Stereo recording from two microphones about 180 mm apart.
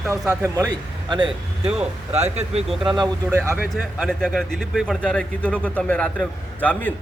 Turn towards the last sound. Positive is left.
turn(degrees=10)  # may be behind; listen again after turning